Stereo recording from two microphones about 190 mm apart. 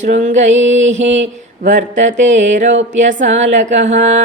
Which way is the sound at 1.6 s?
40° right (ahead or behind).